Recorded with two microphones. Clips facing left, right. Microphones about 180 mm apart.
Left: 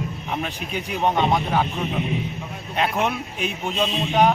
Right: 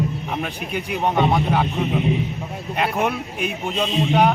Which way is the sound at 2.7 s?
10° right (ahead or behind).